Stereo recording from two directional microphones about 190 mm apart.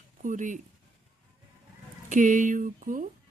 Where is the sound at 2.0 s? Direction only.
40° right (ahead or behind).